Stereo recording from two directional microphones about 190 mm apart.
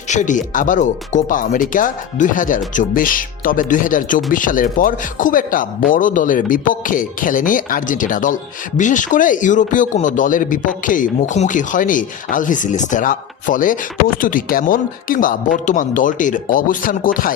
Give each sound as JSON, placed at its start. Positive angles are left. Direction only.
{"t": 0.1, "sound": "speech", "side_deg": 40}